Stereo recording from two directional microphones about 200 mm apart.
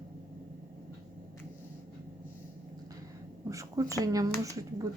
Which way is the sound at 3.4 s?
15° right (ahead or behind).